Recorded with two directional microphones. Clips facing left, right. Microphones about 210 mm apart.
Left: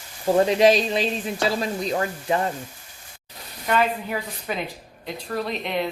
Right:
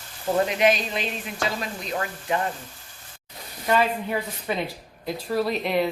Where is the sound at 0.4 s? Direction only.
30° left (ahead or behind).